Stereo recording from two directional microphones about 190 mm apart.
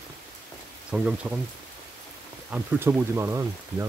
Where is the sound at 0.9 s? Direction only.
5° right (ahead or behind).